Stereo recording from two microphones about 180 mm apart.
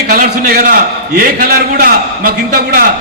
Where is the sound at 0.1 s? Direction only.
55° right (ahead or behind).